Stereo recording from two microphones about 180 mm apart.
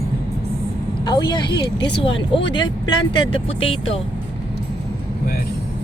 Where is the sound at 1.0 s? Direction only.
25° left (ahead or behind).